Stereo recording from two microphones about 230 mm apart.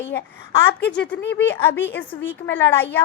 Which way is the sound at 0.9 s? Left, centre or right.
Centre.